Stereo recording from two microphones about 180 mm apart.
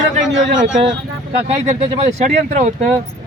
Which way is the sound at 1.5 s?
35° right (ahead or behind).